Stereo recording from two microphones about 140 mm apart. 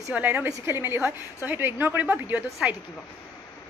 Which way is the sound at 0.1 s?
15° right (ahead or behind).